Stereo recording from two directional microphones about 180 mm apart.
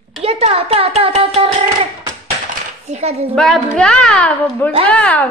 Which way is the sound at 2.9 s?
35° right (ahead or behind).